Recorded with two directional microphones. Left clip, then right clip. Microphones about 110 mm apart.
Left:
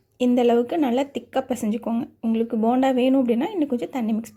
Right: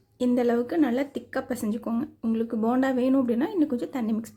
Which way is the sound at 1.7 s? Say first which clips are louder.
Left 4 dB; 5° left (ahead or behind).